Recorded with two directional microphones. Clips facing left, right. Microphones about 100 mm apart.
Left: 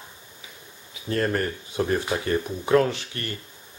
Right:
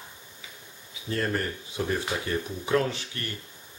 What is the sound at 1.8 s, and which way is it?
Speech, 55° left (ahead or behind).